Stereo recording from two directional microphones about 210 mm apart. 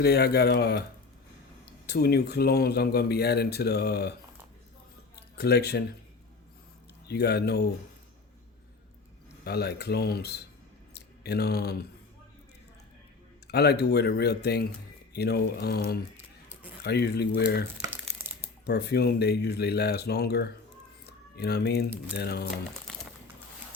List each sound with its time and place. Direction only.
0.0 s speech: 50° left (ahead or behind)
1.9 s speech: 50° left (ahead or behind)
5.1 s a sound: 50° left (ahead or behind)
7.1 s speech: 50° left (ahead or behind)
9.4 s speech: 50° left (ahead or behind)
13.5 s speech: 50° left (ahead or behind)
17.8 s crumpling: 10° right (ahead or behind)
18.6 s speech: 50° left (ahead or behind)